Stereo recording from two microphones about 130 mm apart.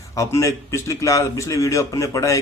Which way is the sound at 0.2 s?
25° left (ahead or behind).